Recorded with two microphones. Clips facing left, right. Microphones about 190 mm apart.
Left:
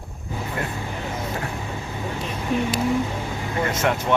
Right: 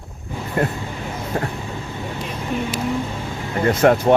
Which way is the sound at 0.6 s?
40° right (ahead or behind).